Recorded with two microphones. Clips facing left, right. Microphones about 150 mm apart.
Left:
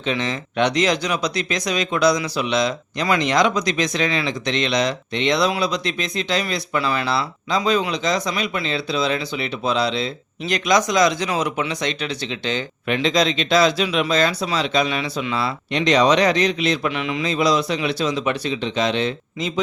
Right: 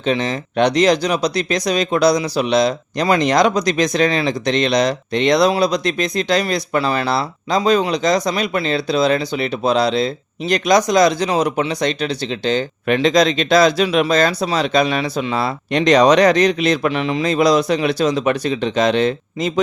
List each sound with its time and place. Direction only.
0.0 s speech: 35° right (ahead or behind)